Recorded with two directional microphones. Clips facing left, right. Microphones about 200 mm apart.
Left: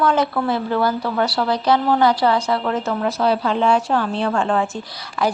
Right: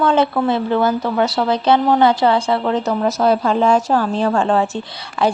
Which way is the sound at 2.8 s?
35° right (ahead or behind).